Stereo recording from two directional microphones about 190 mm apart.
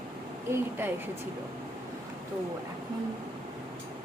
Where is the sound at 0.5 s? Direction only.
10° right (ahead or behind).